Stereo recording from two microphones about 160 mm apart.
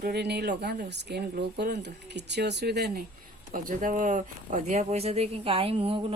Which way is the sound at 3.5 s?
60° right (ahead or behind).